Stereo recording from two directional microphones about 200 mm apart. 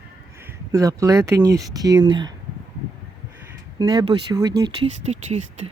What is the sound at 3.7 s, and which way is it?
Speech, 20° right (ahead or behind).